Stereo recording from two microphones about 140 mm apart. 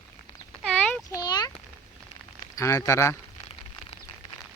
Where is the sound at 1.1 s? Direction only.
30° left (ahead or behind).